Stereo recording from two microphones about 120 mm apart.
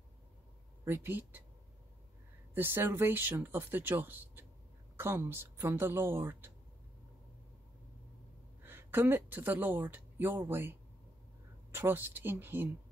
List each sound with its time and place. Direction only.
0.8 s speech: 20° right (ahead or behind)
2.5 s speech: 20° right (ahead or behind)
8.6 s speech: 15° right (ahead or behind)